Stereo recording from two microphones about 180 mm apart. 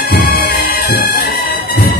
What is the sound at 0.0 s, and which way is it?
Bagpipes, 60° left (ahead or behind).